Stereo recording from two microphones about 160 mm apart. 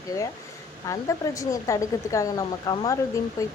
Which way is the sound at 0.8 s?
20° left (ahead or behind).